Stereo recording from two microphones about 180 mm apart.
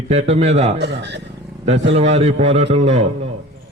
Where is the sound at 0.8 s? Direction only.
70° right (ahead or behind).